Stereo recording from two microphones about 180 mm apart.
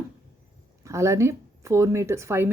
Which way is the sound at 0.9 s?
15° right (ahead or behind).